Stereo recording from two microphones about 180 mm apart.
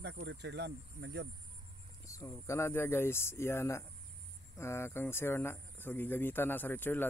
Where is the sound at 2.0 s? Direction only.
15° left (ahead or behind).